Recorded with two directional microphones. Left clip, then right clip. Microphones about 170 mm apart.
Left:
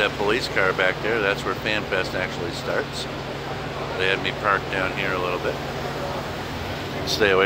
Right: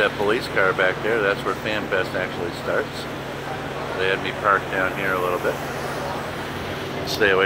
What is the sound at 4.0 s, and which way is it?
Speech, 15° right (ahead or behind).